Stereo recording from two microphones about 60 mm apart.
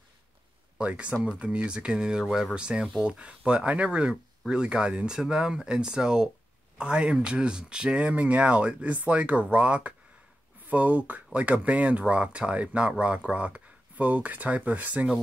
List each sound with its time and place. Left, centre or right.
0.7 s speech: centre